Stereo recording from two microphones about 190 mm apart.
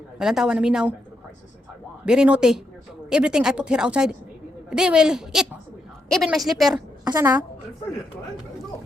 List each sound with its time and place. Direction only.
0.2 s a woman's voice: centre (ahead or behind)
2.0 s a woman's voice: 5° right (ahead or behind)
7.0 s a woman's voice: 15° right (ahead or behind)